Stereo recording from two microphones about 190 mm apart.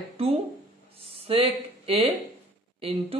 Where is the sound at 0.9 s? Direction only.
30° right (ahead or behind).